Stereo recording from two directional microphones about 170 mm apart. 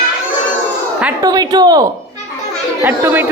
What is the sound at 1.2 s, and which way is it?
Speech, 25° right (ahead or behind).